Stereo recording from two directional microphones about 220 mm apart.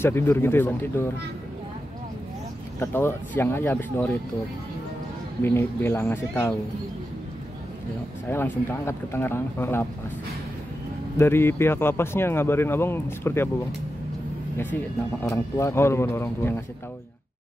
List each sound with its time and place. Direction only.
0.0 s speech: 10° left (ahead or behind)
2.8 s speech: 10° left (ahead or behind)
5.4 s speech: 10° left (ahead or behind)
8.3 s speech: 10° left (ahead or behind)
11.1 s speech: 10° left (ahead or behind)
15.2 s speech: 15° left (ahead or behind)